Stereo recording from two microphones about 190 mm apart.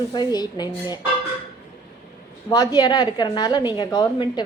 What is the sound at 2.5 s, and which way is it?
A woman's voice, 20° left (ahead or behind).